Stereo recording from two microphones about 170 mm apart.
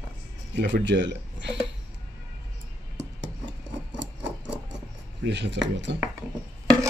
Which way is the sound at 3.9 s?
90° right.